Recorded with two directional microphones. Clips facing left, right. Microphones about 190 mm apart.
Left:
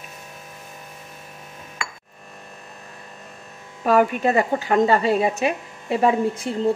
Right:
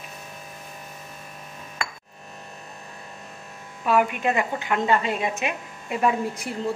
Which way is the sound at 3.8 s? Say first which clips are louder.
Left 4 dB; 40° left (ahead or behind).